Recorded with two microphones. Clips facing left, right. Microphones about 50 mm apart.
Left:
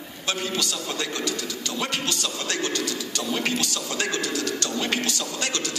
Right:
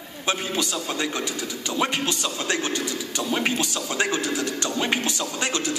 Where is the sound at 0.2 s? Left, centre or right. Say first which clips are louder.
Right 2 dB; centre.